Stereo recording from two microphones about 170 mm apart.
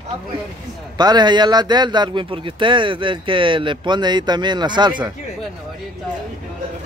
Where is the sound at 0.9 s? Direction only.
25° right (ahead or behind).